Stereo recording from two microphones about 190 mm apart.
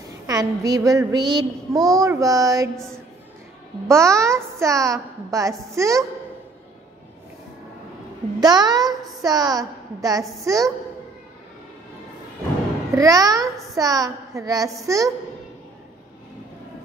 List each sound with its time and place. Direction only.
0.3 s child singing: 20° right (ahead or behind)
3.8 s a woman's voice: 15° right (ahead or behind)
8.4 s a woman's voice: 20° right (ahead or behind)
12.9 s a woman's voice: 20° right (ahead or behind)